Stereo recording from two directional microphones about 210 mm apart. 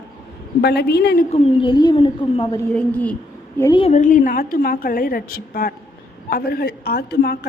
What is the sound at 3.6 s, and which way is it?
A woman's voice, 20° left (ahead or behind).